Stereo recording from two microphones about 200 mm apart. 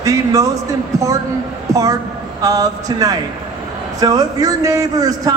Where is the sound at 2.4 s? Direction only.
15° right (ahead or behind).